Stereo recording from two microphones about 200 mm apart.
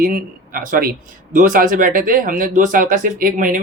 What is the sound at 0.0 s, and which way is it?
Speech, 45° right (ahead or behind).